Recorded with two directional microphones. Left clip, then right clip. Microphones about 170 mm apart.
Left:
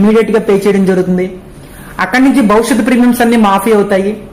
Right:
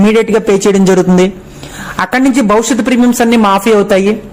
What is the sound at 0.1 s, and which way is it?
Speech, 30° right (ahead or behind).